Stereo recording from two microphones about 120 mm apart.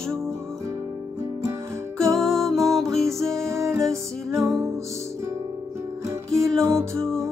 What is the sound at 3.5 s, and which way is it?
Music, 25° right (ahead or behind).